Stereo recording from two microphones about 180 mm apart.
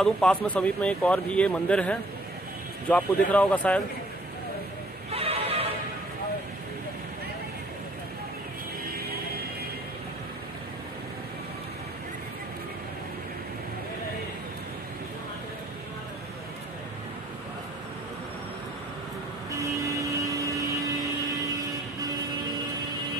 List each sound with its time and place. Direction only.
0.0 s speech: 5° left (ahead or behind)
5.1 s music: 35° right (ahead or behind)
19.5 s vehicle: 20° right (ahead or behind)